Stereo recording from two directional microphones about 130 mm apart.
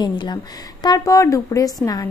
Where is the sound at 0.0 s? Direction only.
35° left (ahead or behind).